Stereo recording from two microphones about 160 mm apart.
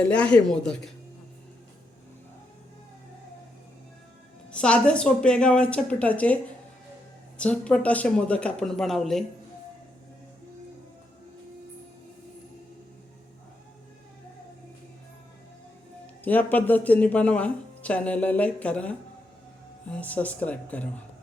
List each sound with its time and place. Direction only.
0.1 s speech: 5° left (ahead or behind)
4.5 s speech: 5° left (ahead or behind)
16.2 s speech: 10° left (ahead or behind)